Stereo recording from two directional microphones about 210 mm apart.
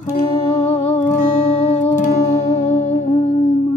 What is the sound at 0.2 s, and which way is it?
Music, 30° left (ahead or behind).